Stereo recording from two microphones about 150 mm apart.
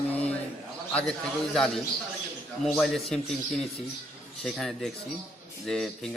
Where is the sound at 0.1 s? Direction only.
45° left (ahead or behind).